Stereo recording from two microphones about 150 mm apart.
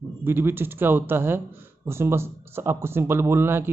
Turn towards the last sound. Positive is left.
turn(degrees=-15)  # may be behind; listen again after turning